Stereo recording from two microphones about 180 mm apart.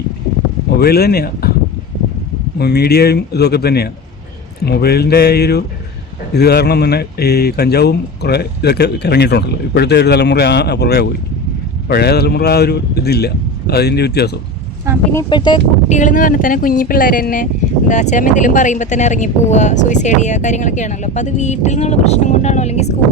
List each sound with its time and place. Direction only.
0.8 s speech: 60° left (ahead or behind)
2.6 s speech: 65° left (ahead or behind)
15.3 s speech: 25° left (ahead or behind)
15.9 s speech: 45° left (ahead or behind)